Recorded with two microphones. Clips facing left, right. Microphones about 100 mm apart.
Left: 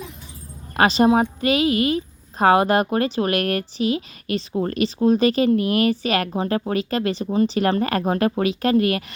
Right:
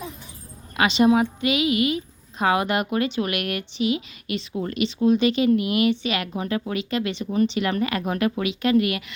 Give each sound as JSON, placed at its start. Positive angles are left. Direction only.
{"t": 0.8, "sound": "speech", "side_deg": 40}